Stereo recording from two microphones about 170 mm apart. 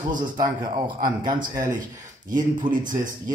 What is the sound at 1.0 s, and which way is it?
Speech, 25° right (ahead or behind).